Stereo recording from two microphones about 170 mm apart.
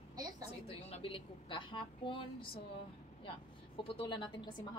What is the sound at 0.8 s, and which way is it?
A woman's voice, 30° left (ahead or behind).